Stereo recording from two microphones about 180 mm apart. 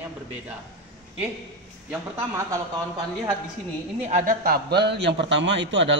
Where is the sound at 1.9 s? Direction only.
15° right (ahead or behind).